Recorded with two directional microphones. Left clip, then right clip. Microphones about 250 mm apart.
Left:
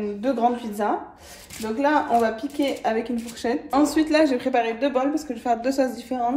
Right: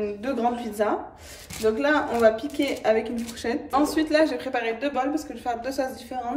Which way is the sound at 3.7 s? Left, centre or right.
Left.